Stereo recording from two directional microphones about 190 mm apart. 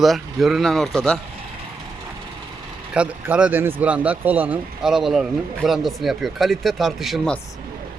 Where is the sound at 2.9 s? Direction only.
5° right (ahead or behind).